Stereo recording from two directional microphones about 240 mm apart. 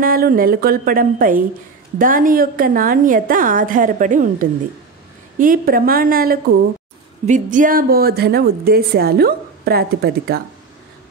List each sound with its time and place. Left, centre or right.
0.0 s a woman's voice: right